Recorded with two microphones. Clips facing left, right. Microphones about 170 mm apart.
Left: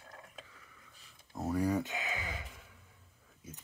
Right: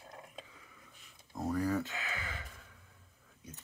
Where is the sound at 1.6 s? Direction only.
15° left (ahead or behind).